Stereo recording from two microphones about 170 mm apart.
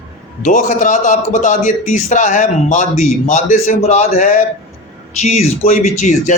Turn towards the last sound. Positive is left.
turn(degrees=45)  # may be behind; listen again after turning